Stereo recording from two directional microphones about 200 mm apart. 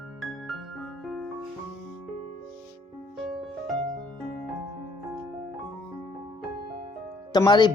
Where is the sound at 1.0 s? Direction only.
Centre (ahead or behind).